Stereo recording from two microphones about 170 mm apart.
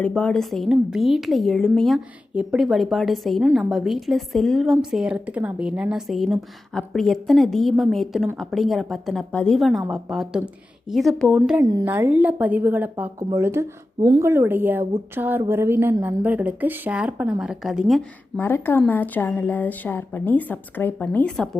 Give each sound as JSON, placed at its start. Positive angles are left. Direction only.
{"t": 0.0, "sound": "a woman's voice", "side_deg": 5}
{"t": 11.6, "sound": "speech", "side_deg": -25}
{"t": 11.9, "sound": "a woman's voice", "side_deg": -10}
{"t": 18.3, "sound": "a woman's voice", "side_deg": 10}